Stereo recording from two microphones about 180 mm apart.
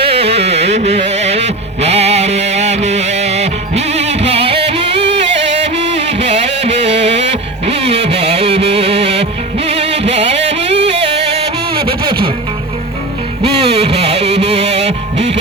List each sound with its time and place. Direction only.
0.1 s music: 35° right (ahead or behind)
4.9 s music: 70° right (ahead or behind)
5.5 s music: 35° right (ahead or behind)
7.6 s a sound: 35° right (ahead or behind)
8.1 s music: 35° right (ahead or behind)
11.0 s music: 70° right (ahead or behind)
11.3 s a sound: 30° right (ahead or behind)
13.6 s music: 35° right (ahead or behind)